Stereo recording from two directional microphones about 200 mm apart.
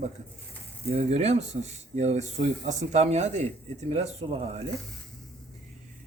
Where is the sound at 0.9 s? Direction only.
30° right (ahead or behind).